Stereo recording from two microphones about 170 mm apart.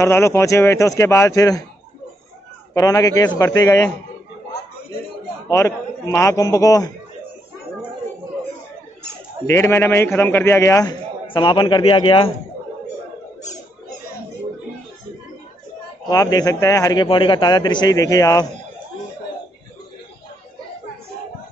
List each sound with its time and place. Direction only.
0.0 s a man's voice: 15° left (ahead or behind)
2.7 s a man's voice: 20° left (ahead or behind)
5.5 s speech: 15° left (ahead or behind)
9.5 s a man's voice: 15° left (ahead or behind); by 12.3 s 30° left (ahead or behind)
16.1 s speech: 20° left (ahead or behind)